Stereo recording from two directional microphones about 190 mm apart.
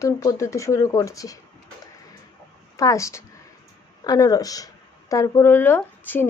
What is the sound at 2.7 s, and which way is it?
Speech, 15° left (ahead or behind).